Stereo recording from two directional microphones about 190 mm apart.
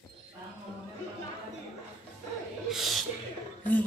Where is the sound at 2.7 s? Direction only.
Centre (ahead or behind).